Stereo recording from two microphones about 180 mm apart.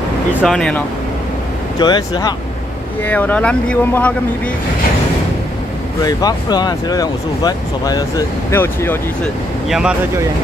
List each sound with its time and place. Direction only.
0.4 s speech: 5° left (ahead or behind)
1.8 s speech: 25° left (ahead or behind)
3.0 s speech: 10° left (ahead or behind)
6.0 s speech: 20° left (ahead or behind)
9.7 s speech: 5° right (ahead or behind)